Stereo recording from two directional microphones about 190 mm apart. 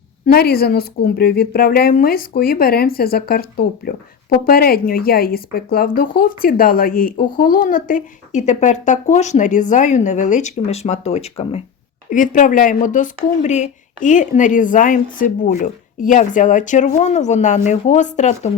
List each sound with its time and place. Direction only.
0.3 s a woman's voice: 55° left (ahead or behind); by 18.5 s 40° left (ahead or behind)